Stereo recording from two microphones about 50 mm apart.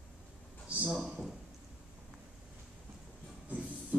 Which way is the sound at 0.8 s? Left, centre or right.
Centre.